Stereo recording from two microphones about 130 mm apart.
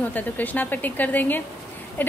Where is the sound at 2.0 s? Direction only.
15° left (ahead or behind).